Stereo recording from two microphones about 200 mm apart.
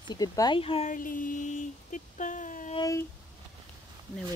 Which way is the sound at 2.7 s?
15° left (ahead or behind).